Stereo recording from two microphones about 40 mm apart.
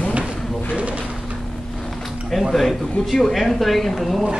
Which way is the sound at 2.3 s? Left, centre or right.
Centre.